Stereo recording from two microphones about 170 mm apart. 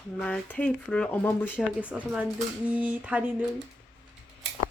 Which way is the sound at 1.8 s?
5° right (ahead or behind).